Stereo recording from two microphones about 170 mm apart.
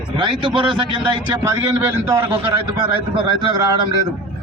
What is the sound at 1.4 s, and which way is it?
Speech, 15° right (ahead or behind).